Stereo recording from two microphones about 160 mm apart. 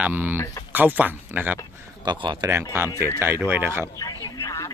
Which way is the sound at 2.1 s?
25° right (ahead or behind).